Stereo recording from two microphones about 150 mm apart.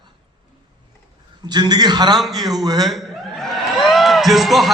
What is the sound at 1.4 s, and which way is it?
Speech, 30° right (ahead or behind).